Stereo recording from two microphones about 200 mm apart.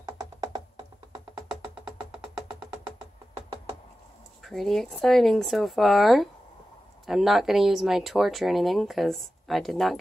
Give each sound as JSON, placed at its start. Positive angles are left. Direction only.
{"t": 0.0, "sound": "music", "side_deg": -20}
{"t": 4.4, "sound": "speech", "side_deg": 0}